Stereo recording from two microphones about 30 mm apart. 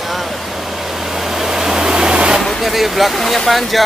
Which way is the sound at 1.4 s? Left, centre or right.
Centre.